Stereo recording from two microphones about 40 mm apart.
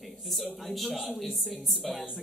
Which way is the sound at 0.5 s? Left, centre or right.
Centre.